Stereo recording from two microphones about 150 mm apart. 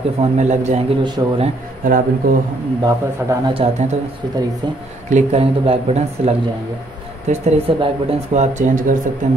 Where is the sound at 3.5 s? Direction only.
45° right (ahead or behind).